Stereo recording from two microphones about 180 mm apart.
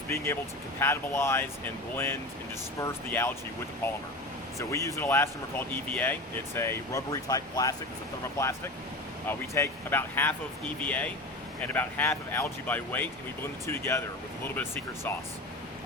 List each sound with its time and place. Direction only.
0.8 s speech: 15° left (ahead or behind)
4.5 s speech: 15° left (ahead or behind)